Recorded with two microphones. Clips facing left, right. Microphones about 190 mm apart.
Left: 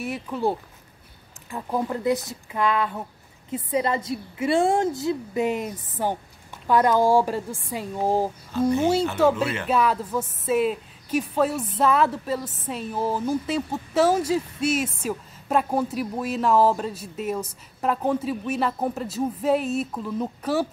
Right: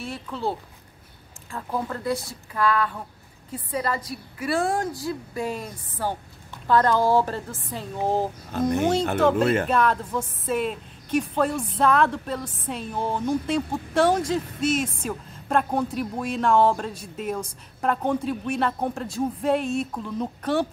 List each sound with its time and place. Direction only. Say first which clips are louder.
0.0 s a woman's voice: left 4 dB; 15° left (ahead or behind)
8.5 s speech: left 2 dB; 60° right (ahead or behind)
9.4 s speech: right 5 dB; 50° right (ahead or behind)
9.7 s a woman's voice: even; 5° left (ahead or behind)